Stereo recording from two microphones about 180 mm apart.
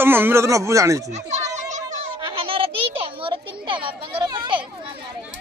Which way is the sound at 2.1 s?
30° right (ahead or behind).